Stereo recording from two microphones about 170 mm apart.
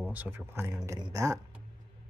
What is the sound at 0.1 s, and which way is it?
Speech, 10° right (ahead or behind).